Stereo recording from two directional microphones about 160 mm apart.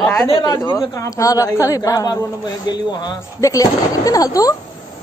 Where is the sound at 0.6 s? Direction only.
20° left (ahead or behind).